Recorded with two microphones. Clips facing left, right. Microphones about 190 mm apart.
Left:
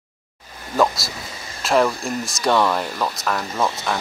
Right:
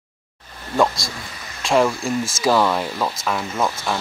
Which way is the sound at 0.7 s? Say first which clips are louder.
Even; centre (ahead or behind).